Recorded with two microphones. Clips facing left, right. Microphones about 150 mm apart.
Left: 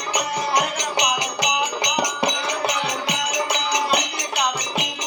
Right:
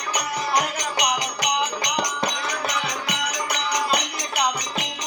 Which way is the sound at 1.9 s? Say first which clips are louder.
Left 4 dB; 10° left (ahead or behind).